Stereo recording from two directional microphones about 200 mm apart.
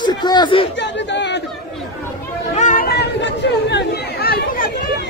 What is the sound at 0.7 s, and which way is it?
Chatter, 60° left (ahead or behind).